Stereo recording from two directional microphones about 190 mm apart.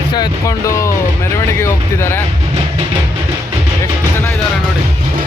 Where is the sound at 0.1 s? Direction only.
20° left (ahead or behind).